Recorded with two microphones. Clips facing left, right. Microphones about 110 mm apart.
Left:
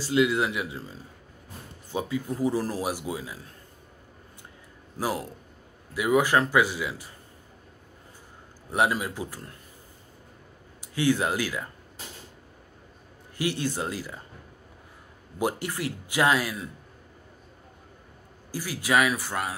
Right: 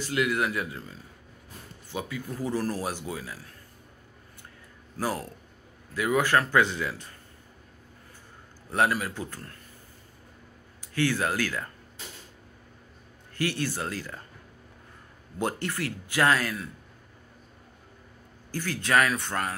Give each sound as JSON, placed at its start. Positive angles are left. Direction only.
{"t": 0.0, "sound": "speech", "side_deg": 25}
{"t": 2.0, "sound": "speech", "side_deg": 25}
{"t": 4.9, "sound": "speech", "side_deg": 15}
{"t": 8.6, "sound": "speech", "side_deg": 15}
{"t": 11.0, "sound": "speech", "side_deg": 15}
{"t": 13.4, "sound": "speech", "side_deg": 15}
{"t": 15.3, "sound": "speech", "side_deg": 15}
{"t": 18.5, "sound": "speech", "side_deg": 10}